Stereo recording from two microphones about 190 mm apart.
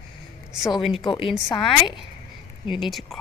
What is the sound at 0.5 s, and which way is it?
Speech, centre (ahead or behind).